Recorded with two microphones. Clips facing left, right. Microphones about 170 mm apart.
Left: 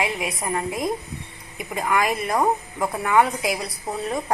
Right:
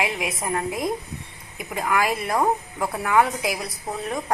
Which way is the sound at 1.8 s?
Centre (ahead or behind).